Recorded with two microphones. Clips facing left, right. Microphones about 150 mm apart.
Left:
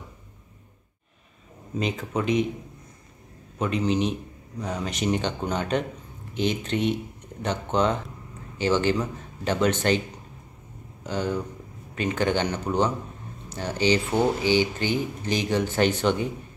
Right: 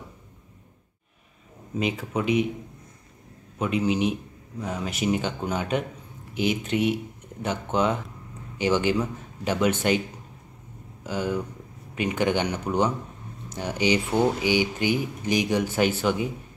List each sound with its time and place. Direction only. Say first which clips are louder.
1.8 s a man's voice: even; 10° right (ahead or behind)
3.5 s a man's voice: even; 10° right (ahead or behind)
11.1 s a man's voice: even; 10° right (ahead or behind)